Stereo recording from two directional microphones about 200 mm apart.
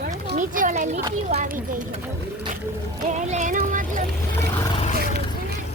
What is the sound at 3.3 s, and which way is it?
Music, 40° right (ahead or behind).